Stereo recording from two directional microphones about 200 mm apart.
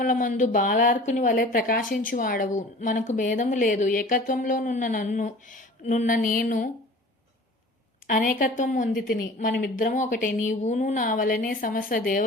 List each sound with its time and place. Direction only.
0.0 s speech: 40° left (ahead or behind)
8.0 s speech: 40° left (ahead or behind)